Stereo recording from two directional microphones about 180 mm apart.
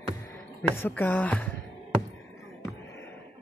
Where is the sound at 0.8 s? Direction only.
10° left (ahead or behind).